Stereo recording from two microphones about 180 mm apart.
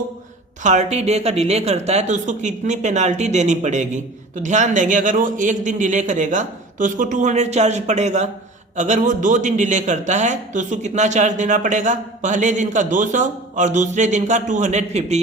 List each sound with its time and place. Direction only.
0.6 s a man's voice: 40° right (ahead or behind)